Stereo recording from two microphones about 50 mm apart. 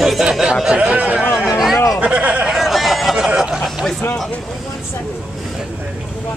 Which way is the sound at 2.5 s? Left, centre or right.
Centre.